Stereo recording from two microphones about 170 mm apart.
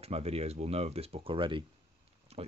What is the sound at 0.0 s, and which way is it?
Speech, 35° right (ahead or behind).